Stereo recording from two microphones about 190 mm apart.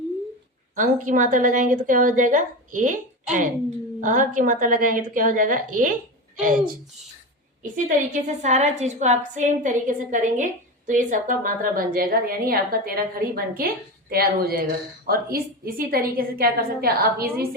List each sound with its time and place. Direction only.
0.8 s a woman's voice: 45° right (ahead or behind)
7.6 s a woman's voice: 45° right (ahead or behind)